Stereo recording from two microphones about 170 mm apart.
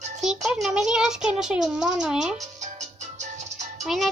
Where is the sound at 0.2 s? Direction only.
5° right (ahead or behind).